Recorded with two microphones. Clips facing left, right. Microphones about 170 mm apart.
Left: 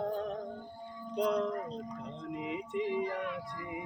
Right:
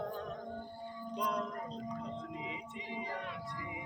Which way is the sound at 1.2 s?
65° left (ahead or behind).